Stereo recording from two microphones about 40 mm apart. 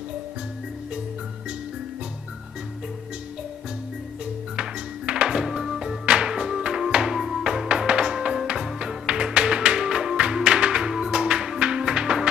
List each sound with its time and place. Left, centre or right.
4.6 s music: right
5.4 s music: centre
6.0 s music: right
7.2 s music: centre
7.4 s music: right